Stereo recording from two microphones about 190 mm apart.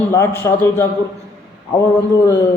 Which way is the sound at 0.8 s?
15° left (ahead or behind).